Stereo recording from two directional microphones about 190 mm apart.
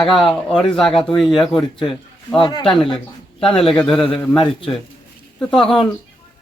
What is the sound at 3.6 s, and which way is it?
Speech, centre (ahead or behind).